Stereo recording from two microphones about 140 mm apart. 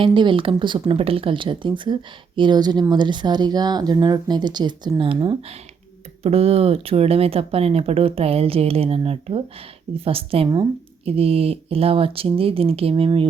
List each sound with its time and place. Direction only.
0.0 s speech: 35° right (ahead or behind)
6.2 s speech: 45° right (ahead or behind)